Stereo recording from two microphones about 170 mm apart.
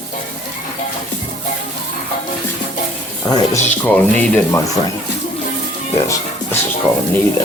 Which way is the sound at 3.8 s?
10° left (ahead or behind).